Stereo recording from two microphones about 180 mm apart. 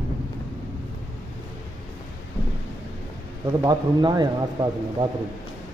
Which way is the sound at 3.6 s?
25° right (ahead or behind).